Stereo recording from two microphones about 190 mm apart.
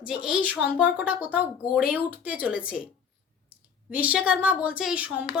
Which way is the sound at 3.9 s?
10° right (ahead or behind).